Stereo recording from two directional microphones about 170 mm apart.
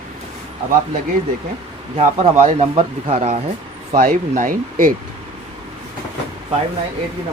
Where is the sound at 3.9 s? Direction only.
55° right (ahead or behind).